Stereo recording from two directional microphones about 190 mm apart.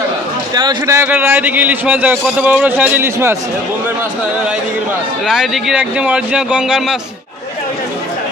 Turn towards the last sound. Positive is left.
turn(degrees=-5)  # may be behind; listen again after turning